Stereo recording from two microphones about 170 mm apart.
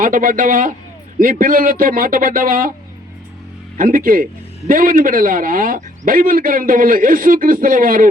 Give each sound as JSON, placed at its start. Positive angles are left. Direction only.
{"t": 0.0, "sound": "a man's voice", "side_deg": -55}
{"t": 3.8, "sound": "a man's voice", "side_deg": -55}